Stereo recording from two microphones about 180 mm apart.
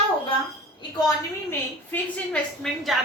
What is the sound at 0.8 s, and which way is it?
Speech, 20° left (ahead or behind).